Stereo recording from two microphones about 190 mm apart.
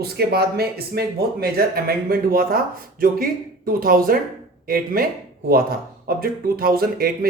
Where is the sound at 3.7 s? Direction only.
50° right (ahead or behind).